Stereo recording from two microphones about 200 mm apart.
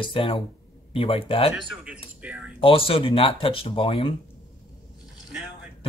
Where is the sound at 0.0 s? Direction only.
25° left (ahead or behind).